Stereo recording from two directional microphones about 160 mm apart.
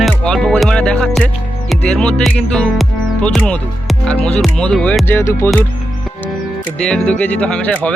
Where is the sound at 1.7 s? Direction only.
5° left (ahead or behind).